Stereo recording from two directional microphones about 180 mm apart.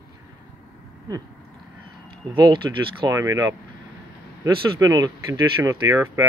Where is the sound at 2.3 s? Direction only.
25° right (ahead or behind).